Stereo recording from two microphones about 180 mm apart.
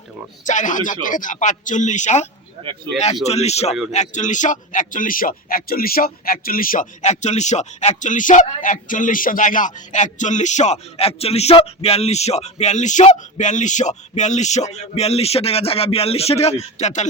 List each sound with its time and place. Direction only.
0.4 s speech: 45° left (ahead or behind)
3.2 s speech: 35° left (ahead or behind)